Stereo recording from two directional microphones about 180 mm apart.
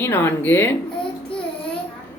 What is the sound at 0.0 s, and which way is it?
Speech, 10° left (ahead or behind).